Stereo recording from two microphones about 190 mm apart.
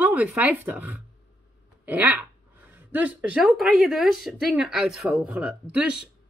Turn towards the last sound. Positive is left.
turn(degrees=-5)  # may be behind; listen again after turning